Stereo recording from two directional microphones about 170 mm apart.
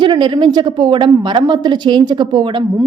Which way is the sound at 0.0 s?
25° right (ahead or behind).